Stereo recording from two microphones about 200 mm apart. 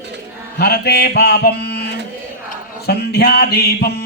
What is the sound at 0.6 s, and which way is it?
A man's voice, 50° left (ahead or behind).